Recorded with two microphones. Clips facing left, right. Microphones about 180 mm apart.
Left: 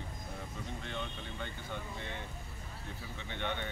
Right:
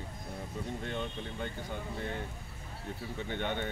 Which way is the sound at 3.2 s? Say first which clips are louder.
Right 3 dB; 45° right (ahead or behind).